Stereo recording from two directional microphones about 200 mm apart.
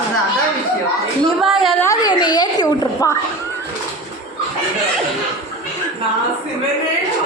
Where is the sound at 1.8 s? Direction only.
20° left (ahead or behind).